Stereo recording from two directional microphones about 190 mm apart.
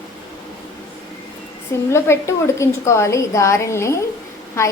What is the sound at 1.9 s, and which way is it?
A woman's voice, 15° left (ahead or behind).